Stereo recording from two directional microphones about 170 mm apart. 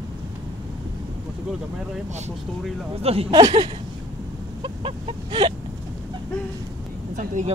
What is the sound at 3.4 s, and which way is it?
Speech, 25° right (ahead or behind).